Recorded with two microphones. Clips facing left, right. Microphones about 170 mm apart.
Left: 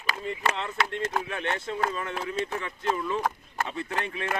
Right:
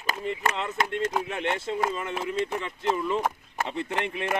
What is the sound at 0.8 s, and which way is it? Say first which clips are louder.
Speech: right 1 dB; 45° right (ahead or behind).